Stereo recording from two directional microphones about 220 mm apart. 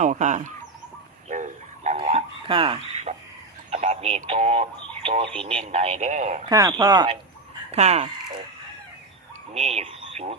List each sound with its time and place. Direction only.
0.0 s speech: 35° right (ahead or behind)
1.3 s a sound: 35° right (ahead or behind)
3.7 s speech: 30° right (ahead or behind)
6.5 s speech: 15° right (ahead or behind)
9.5 s speech: 30° right (ahead or behind)